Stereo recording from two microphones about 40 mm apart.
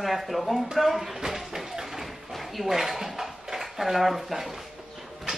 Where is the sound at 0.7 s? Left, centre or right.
Centre.